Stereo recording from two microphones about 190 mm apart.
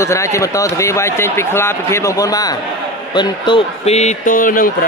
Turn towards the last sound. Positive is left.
turn(degrees=45)  # may be behind; listen again after turning